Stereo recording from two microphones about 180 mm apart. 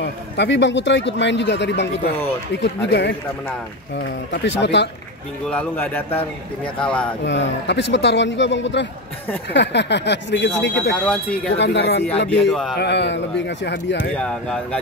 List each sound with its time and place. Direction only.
0.0 s a man's voice: 75° left (ahead or behind)
4.3 s a man's voice: 75° left (ahead or behind)
5.5 s a man's voice: 10° left (ahead or behind)
7.2 s a man's voice: 80° left
12.4 s speech: centre (ahead or behind)
12.7 s a man's voice: 70° left (ahead or behind)
14.1 s a man's voice: 5° left (ahead or behind)